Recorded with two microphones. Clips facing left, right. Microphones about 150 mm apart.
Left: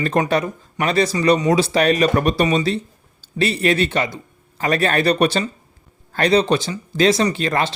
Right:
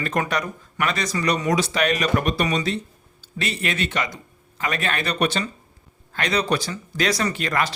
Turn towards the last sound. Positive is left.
turn(degrees=25)  # may be behind; listen again after turning